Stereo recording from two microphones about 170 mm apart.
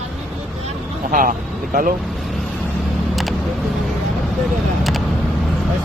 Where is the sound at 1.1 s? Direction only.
50° right (ahead or behind).